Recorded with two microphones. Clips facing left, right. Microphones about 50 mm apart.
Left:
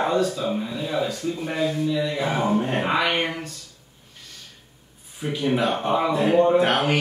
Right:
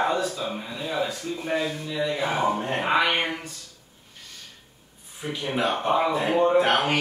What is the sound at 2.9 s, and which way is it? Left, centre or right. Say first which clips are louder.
Speech: right 3 dB; centre.